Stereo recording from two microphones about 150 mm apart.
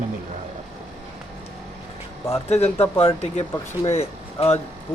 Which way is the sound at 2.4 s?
45° left (ahead or behind).